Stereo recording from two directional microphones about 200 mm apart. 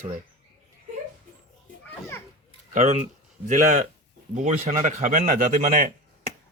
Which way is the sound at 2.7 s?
35° right (ahead or behind).